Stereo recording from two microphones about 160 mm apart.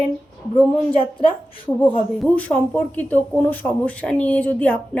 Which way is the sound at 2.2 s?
10° left (ahead or behind).